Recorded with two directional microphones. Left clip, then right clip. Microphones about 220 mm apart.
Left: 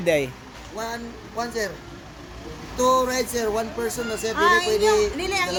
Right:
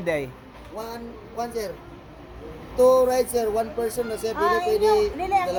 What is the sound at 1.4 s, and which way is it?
Speech, 35° left (ahead or behind).